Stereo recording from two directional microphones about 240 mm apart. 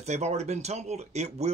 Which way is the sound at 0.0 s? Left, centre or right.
Right.